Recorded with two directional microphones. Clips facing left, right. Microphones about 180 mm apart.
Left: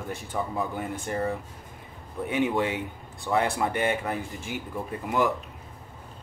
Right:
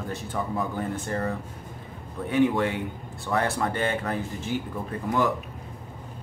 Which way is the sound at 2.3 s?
20° left (ahead or behind).